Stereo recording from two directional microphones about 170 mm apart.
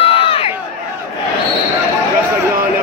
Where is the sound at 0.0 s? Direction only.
35° left (ahead or behind).